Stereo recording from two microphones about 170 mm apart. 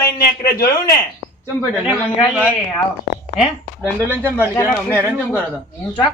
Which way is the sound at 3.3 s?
10° right (ahead or behind).